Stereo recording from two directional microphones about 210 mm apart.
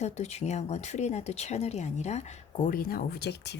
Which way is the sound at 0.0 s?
30° left (ahead or behind).